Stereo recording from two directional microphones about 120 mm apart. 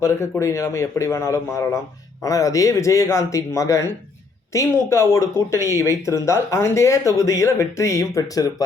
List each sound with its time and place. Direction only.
0.0 s speech: 25° left (ahead or behind)